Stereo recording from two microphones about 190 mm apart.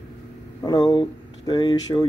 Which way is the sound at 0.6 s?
20° left (ahead or behind).